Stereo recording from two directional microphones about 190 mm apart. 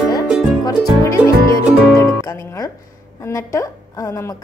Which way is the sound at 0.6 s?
15° left (ahead or behind).